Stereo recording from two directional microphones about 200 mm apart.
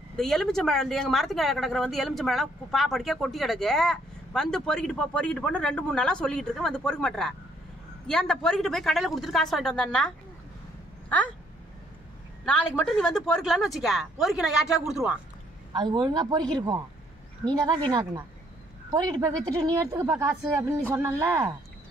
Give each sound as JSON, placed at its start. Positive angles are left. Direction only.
{"t": 0.1, "sound": "a woman's voice", "side_deg": 0}
{"t": 12.4, "sound": "a woman's voice", "side_deg": 0}
{"t": 15.7, "sound": "a man's voice", "side_deg": -20}